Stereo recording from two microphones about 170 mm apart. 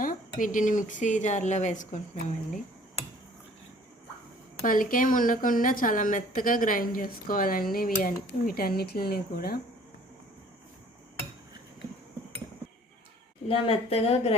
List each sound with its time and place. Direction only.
0.0 s a woman's voice: 55° left (ahead or behind)
4.6 s a woman's voice: 55° left (ahead or behind)
13.5 s speech: 35° left (ahead or behind)